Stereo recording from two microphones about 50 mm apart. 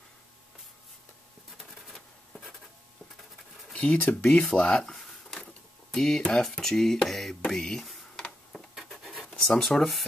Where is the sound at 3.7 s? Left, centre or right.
Left.